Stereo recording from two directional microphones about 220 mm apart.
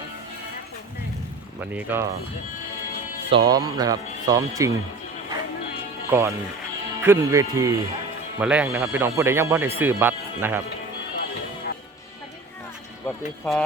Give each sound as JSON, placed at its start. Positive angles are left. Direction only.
{"t": 1.7, "sound": "speech", "side_deg": -10}
{"t": 3.3, "sound": "speech", "side_deg": -15}
{"t": 6.1, "sound": "speech", "side_deg": -10}
{"t": 13.1, "sound": "speech", "side_deg": 5}